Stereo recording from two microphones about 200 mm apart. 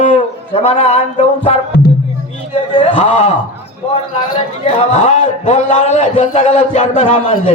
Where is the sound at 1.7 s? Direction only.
55° left (ahead or behind).